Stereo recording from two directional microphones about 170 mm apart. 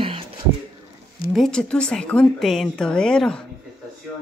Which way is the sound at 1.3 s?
5° left (ahead or behind).